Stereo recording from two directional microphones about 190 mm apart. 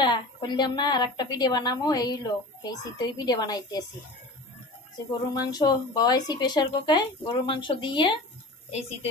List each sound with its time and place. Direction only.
0.0 s a woman's voice: 25° left (ahead or behind)
5.5 s a woman's voice: 20° left (ahead or behind)